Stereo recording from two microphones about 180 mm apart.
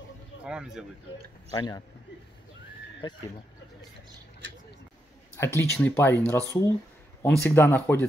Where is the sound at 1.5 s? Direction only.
20° left (ahead or behind).